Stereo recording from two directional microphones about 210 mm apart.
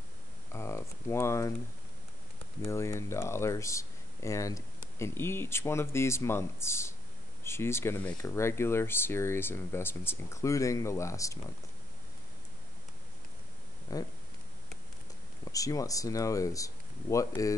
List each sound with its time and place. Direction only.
0.5 s speech: 10° left (ahead or behind)
2.6 s speech: 10° left (ahead or behind)
13.9 s speech: 15° left (ahead or behind)
15.5 s speech: 15° left (ahead or behind)